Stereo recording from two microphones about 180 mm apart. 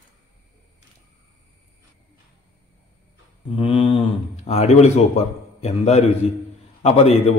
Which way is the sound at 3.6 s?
30° left (ahead or behind).